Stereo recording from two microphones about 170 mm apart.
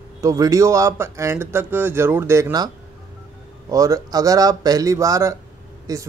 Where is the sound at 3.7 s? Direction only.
20° right (ahead or behind).